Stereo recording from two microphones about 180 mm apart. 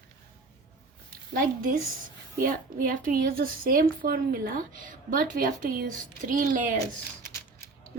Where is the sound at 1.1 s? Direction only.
50° right (ahead or behind).